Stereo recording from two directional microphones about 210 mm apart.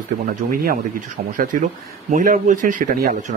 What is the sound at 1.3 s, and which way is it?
Speech, 40° right (ahead or behind).